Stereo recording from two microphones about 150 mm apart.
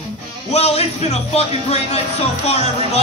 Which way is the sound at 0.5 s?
45° left (ahead or behind).